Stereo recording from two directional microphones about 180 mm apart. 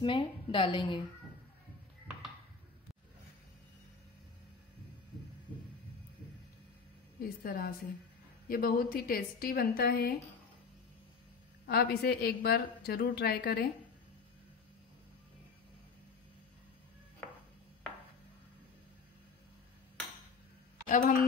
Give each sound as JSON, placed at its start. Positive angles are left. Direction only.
{"t": 0.0, "sound": "a woman's voice", "side_deg": 30}
{"t": 7.2, "sound": "a woman's voice", "side_deg": 55}
{"t": 11.6, "sound": "a woman's voice", "side_deg": 60}
{"t": 17.2, "sound": "a sound", "side_deg": 10}
{"t": 20.9, "sound": "speech", "side_deg": 45}